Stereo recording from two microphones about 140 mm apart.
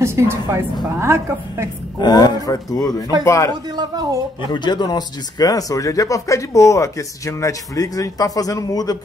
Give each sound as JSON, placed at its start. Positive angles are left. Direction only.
{"t": 0.0, "sound": "a woman's voice", "side_deg": -20}
{"t": 2.0, "sound": "speech", "side_deg": 30}
{"t": 3.6, "sound": "a woman's voice", "side_deg": -30}
{"t": 4.5, "sound": "speech", "side_deg": 30}